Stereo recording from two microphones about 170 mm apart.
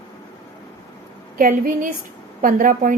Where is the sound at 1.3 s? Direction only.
55° right (ahead or behind).